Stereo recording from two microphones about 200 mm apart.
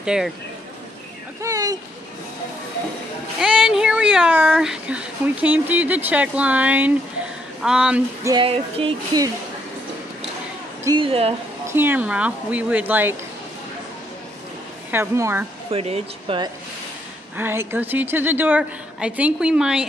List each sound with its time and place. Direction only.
0.0 s speech: 5° right (ahead or behind)
1.4 s speech: 15° right (ahead or behind)
3.3 s speech: 5° right (ahead or behind)
8.3 s music: 25° right (ahead or behind)
10.8 s music: 20° right (ahead or behind)
11.6 s speech: 10° right (ahead or behind)
14.9 s speech: 10° right (ahead or behind)
15.7 s music: 30° right (ahead or behind)
17.4 s speech: 10° right (ahead or behind)